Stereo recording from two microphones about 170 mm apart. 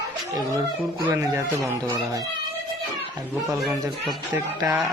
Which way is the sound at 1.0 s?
15° right (ahead or behind).